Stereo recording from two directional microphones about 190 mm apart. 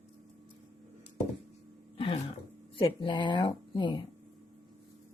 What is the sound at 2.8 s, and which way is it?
Speech, 25° left (ahead or behind).